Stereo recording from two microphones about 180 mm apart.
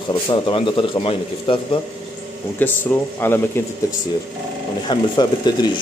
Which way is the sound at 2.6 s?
10° left (ahead or behind).